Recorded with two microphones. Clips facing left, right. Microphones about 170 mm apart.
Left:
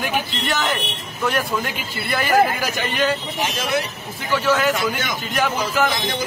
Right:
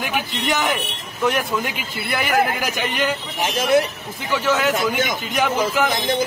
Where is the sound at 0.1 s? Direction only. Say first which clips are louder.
Right 1 dB; 15° right (ahead or behind).